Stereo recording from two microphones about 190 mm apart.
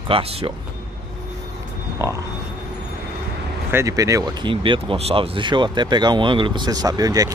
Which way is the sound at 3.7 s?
15° right (ahead or behind).